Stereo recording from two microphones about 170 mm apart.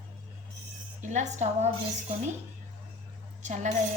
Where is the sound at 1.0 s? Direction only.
45° right (ahead or behind).